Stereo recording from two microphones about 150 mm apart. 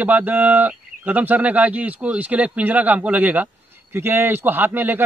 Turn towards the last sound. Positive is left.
turn(degrees=-10)  # may be behind; listen again after turning